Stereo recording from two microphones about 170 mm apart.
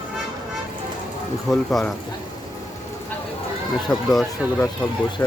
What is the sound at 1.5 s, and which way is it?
Speech, centre (ahead or behind).